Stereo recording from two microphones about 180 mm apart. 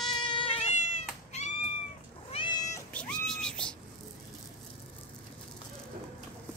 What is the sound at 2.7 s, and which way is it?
Cat, 5° left (ahead or behind).